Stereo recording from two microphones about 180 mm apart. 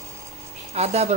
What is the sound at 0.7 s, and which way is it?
Speech, 35° right (ahead or behind).